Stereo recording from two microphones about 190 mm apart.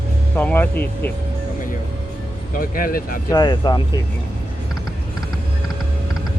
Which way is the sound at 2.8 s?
50° left (ahead or behind).